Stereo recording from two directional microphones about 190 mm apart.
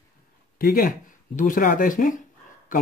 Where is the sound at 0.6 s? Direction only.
50° left (ahead or behind).